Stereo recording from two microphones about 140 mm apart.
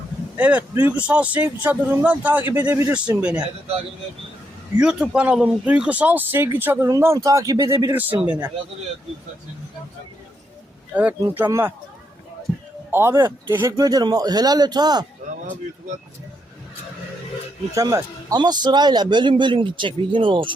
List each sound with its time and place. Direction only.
0.3 s speech: 10° right (ahead or behind)
4.8 s speech: 5° right (ahead or behind); by 7.9 s 25° right (ahead or behind)
7.9 s speech: 10° right (ahead or behind)
10.9 s speech: 10° right (ahead or behind)
12.9 s a man's voice: 15° right (ahead or behind)
17.7 s a man's voice: 25° right (ahead or behind)